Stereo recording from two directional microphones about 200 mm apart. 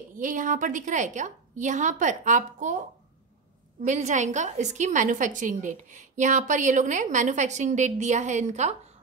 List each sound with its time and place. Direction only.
0.1 s a woman's voice: 40° right (ahead or behind)
3.8 s a woman's voice: 35° right (ahead or behind)